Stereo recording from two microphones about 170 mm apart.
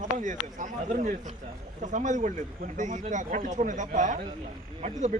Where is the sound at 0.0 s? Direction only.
45° right (ahead or behind).